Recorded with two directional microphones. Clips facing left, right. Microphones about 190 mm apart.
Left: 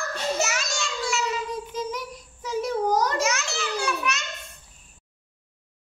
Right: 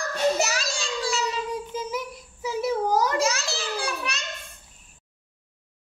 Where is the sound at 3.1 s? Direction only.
35° right (ahead or behind).